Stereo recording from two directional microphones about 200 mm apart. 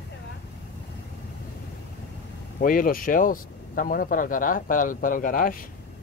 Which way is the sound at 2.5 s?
45° left (ahead or behind).